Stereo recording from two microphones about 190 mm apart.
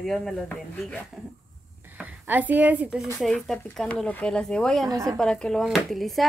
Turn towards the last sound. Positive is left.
turn(degrees=0)  # may be behind; listen again after turning